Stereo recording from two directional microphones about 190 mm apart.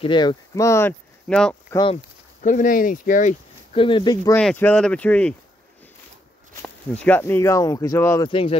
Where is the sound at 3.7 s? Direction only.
25° left (ahead or behind).